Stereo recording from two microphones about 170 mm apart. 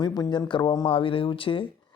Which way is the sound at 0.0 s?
25° left (ahead or behind).